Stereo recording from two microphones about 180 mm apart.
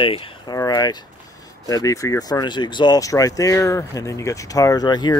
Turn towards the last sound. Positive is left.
turn(degrees=20)  # may be behind; listen again after turning